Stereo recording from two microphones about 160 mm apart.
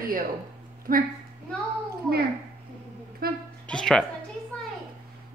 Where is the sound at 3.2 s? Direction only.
70° right (ahead or behind).